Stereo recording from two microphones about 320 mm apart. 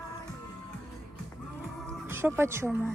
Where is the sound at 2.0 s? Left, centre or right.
Centre.